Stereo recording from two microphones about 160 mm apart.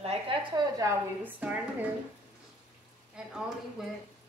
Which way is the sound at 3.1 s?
5° right (ahead or behind).